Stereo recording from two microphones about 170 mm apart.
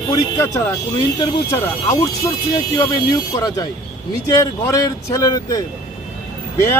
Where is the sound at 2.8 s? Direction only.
20° left (ahead or behind).